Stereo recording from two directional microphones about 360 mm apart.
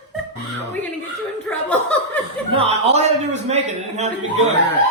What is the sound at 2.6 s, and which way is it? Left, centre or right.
A man's voice, centre.